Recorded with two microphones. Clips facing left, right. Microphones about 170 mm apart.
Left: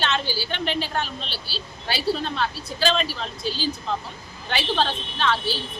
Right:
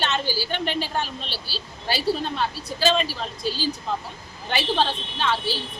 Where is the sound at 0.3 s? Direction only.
40° right (ahead or behind).